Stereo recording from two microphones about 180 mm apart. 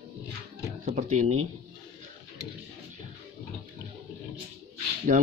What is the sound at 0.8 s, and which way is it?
Speech, 40° right (ahead or behind).